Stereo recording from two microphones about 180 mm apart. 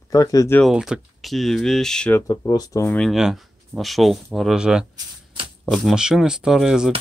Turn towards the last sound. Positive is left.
turn(degrees=-5)  # may be behind; listen again after turning